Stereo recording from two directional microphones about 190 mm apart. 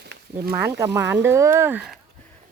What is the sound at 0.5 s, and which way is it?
Speech, 10° right (ahead or behind).